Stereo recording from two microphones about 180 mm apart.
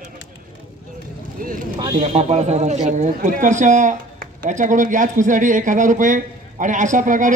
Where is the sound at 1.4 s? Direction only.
50° right (ahead or behind).